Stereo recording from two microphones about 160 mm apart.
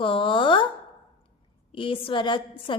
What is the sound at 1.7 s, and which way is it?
Speech, 30° left (ahead or behind).